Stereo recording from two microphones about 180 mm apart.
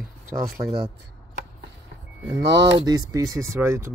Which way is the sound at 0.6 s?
30° right (ahead or behind).